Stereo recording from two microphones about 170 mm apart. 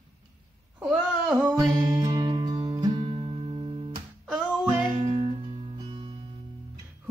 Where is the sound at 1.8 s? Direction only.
25° right (ahead or behind).